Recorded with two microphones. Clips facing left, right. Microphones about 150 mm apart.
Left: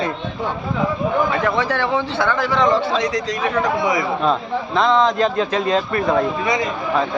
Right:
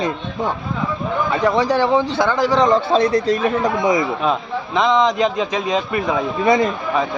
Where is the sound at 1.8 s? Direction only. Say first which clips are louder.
Right 3 dB; 35° right (ahead or behind).